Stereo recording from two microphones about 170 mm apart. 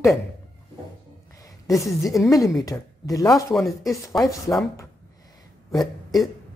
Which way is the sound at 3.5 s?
Centre (ahead or behind).